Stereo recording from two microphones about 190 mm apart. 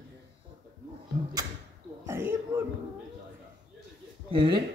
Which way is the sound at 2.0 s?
10° right (ahead or behind).